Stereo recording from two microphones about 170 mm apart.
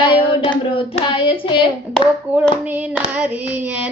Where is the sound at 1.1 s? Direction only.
30° left (ahead or behind).